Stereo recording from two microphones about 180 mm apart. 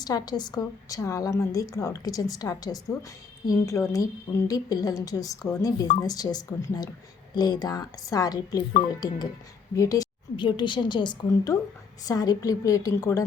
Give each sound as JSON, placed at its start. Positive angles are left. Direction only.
{"t": 0.0, "sound": "a woman's voice", "side_deg": 20}